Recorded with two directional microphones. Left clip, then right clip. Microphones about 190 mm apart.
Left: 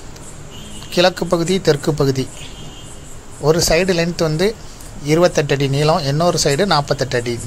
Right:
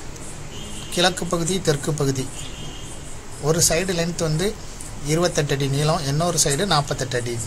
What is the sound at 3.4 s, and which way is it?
Speech, 45° left (ahead or behind).